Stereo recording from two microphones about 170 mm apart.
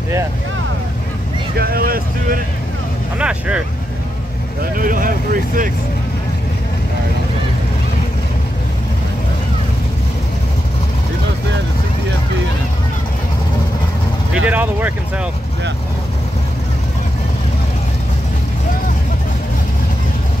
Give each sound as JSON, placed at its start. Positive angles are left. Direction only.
{"t": 1.6, "sound": "speech", "side_deg": -60}
{"t": 3.2, "sound": "speech", "side_deg": -5}
{"t": 4.7, "sound": "speech", "side_deg": -55}
{"t": 14.3, "sound": "speech", "side_deg": -10}